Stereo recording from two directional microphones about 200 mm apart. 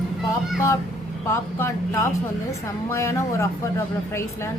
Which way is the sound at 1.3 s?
15° left (ahead or behind).